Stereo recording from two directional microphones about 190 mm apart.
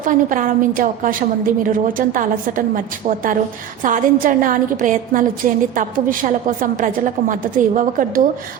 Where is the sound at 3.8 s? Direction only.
45° right (ahead or behind).